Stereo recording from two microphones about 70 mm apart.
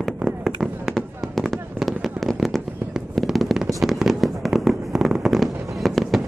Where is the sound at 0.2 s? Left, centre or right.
Centre.